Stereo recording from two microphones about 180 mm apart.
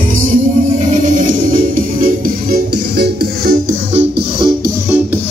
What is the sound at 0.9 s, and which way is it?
Music, 45° right (ahead or behind).